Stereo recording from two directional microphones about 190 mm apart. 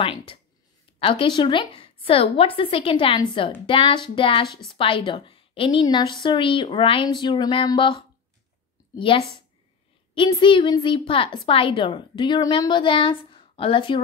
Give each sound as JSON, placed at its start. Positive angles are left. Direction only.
{"t": 0.0, "sound": "a woman's voice", "side_deg": 30}
{"t": 8.9, "sound": "a woman's voice", "side_deg": 30}